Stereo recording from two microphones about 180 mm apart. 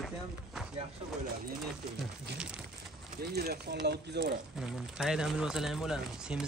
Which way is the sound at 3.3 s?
60° right (ahead or behind).